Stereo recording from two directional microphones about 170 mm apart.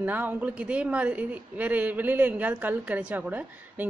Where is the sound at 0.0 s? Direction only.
10° right (ahead or behind).